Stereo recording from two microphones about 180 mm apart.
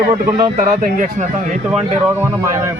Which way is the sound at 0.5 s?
45° right (ahead or behind).